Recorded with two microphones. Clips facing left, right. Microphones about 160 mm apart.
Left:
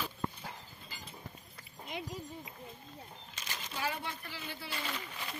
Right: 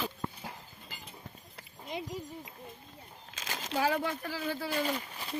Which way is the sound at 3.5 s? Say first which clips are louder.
Right 8 dB; 90° right.